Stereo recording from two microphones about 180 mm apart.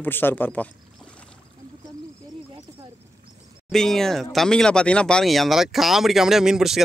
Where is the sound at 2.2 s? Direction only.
25° right (ahead or behind).